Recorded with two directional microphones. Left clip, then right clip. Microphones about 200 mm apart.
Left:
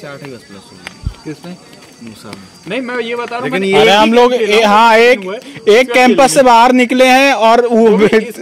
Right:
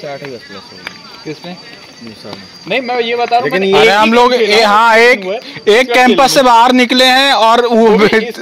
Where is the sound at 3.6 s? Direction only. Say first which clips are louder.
Left 2 dB; 15° left (ahead or behind).